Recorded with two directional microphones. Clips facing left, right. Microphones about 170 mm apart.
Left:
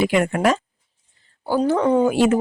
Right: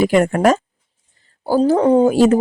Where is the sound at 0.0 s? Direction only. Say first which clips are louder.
Right 4 dB; 40° right (ahead or behind).